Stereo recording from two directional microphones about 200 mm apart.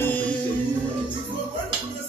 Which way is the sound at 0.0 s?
10° left (ahead or behind).